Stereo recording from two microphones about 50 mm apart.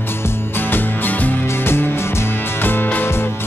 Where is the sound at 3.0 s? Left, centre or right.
Left.